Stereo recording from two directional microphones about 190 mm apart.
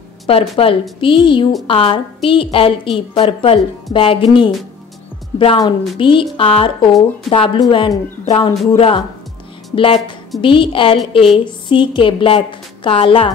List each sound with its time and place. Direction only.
0.3 s a woman's voice: 30° left (ahead or behind)